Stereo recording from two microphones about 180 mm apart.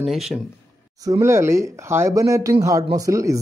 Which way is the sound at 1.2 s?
15° right (ahead or behind).